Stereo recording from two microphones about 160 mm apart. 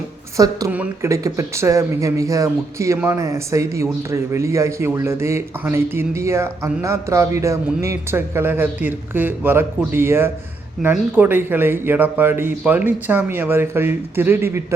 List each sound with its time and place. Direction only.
0.3 s speech: 20° right (ahead or behind)